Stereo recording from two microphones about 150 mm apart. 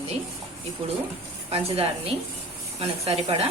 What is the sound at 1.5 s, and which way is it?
Speech, 45° right (ahead or behind).